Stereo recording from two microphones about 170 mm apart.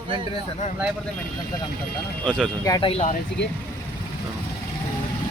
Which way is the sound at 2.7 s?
30° left (ahead or behind).